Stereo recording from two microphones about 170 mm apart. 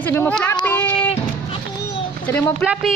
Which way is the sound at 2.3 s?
15° left (ahead or behind).